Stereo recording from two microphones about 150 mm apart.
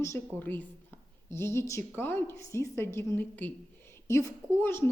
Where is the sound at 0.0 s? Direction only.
15° left (ahead or behind).